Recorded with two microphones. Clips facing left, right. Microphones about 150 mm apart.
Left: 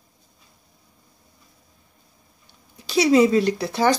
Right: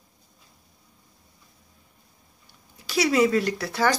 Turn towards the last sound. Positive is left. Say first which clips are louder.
# left 4 dB
turn(degrees=20)  # may be behind; listen again after turning